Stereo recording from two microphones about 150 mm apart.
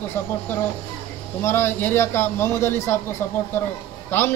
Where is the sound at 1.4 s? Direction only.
15° left (ahead or behind).